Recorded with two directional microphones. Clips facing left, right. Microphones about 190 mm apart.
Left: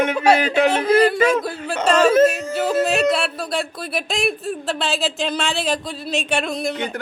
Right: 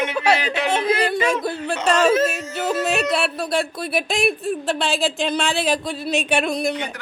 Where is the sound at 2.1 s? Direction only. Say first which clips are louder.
Left 4 dB; 50° left (ahead or behind).